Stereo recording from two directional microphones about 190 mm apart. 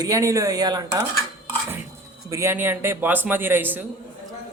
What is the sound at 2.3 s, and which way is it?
Speech, 15° right (ahead or behind).